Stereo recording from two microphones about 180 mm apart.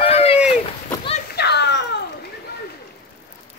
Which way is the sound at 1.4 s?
70° left (ahead or behind).